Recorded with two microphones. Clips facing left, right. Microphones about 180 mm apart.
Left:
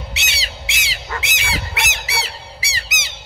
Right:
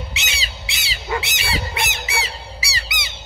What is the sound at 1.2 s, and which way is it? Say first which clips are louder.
Honk: right 1 dB; 90° left.